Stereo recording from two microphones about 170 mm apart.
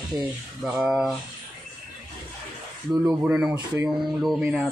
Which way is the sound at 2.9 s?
20° right (ahead or behind).